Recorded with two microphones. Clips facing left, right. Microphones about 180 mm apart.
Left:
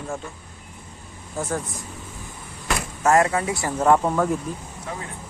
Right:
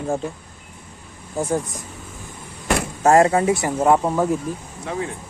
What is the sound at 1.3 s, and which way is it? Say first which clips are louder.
Speech: right 5 dB; 15° right (ahead or behind).